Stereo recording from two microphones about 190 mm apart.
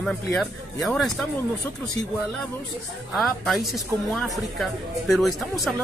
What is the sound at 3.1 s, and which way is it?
A man's voice, centre (ahead or behind).